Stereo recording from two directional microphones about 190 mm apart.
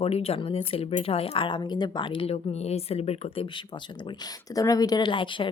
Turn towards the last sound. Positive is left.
turn(degrees=25)  # may be behind; listen again after turning